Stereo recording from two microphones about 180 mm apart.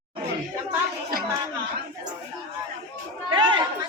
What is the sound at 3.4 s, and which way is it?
Chatter, 25° right (ahead or behind).